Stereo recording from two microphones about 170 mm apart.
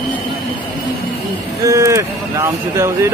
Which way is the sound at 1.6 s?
20° right (ahead or behind).